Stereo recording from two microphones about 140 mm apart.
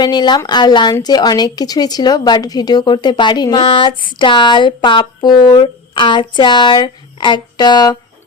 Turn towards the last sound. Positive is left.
turn(degrees=30)  # may be behind; listen again after turning